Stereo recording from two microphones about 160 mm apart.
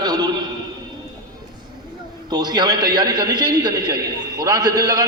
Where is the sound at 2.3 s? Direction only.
25° right (ahead or behind).